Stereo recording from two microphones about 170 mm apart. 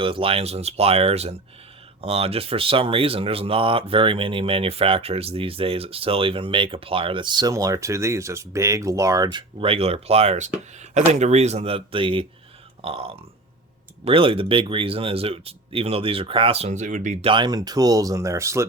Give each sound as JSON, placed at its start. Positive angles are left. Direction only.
{"t": 0.0, "sound": "speech", "side_deg": -30}
{"t": 17.2, "sound": "speech", "side_deg": -25}